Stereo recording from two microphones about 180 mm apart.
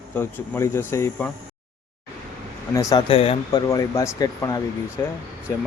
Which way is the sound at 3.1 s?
35° left (ahead or behind).